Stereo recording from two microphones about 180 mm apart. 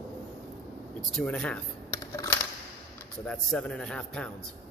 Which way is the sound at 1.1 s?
5° left (ahead or behind).